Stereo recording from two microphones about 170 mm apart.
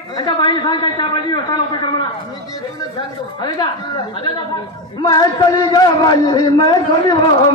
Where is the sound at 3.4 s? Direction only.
25° left (ahead or behind).